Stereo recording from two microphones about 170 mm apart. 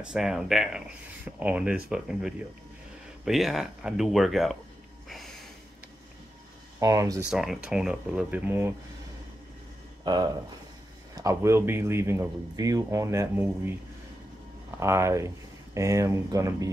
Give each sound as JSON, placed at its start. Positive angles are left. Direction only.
{"t": 0.0, "sound": "speech", "side_deg": -5}
{"t": 5.0, "sound": "snort", "side_deg": 0}
{"t": 6.8, "sound": "speech", "side_deg": -20}
{"t": 7.2, "sound": "speech", "side_deg": 0}
{"t": 10.0, "sound": "speech", "side_deg": -25}
{"t": 14.8, "sound": "speech", "side_deg": -15}